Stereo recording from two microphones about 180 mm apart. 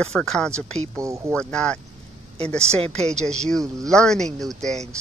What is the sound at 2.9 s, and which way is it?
Speech, 5° left (ahead or behind).